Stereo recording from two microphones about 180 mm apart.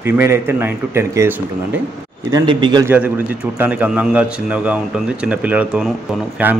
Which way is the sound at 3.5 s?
10° right (ahead or behind).